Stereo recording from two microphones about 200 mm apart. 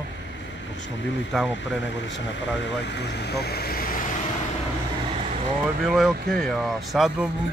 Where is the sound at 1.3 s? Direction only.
Centre (ahead or behind).